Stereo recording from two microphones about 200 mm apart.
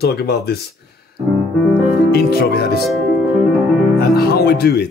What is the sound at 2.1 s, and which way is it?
Speech, 50° left (ahead or behind).